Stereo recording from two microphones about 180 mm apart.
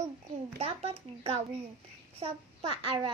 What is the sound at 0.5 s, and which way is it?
A child's voice, 35° right (ahead or behind).